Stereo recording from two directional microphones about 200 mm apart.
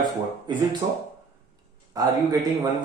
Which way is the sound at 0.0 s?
20° right (ahead or behind).